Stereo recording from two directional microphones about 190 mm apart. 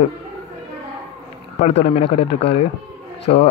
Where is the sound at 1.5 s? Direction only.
30° left (ahead or behind).